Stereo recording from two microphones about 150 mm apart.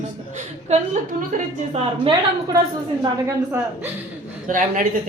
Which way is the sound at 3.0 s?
20° right (ahead or behind).